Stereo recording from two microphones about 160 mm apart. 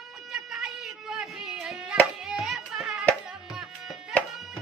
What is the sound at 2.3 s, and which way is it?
Hands, 5° right (ahead or behind).